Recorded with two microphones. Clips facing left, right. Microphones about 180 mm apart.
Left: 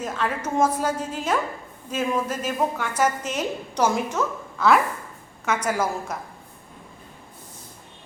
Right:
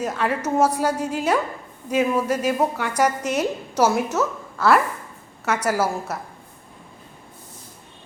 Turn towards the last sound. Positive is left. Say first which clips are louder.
# right 2 dB
turn(degrees=-5)  # may be behind; listen again after turning